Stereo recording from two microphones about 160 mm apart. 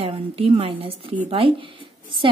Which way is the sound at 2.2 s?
30° right (ahead or behind).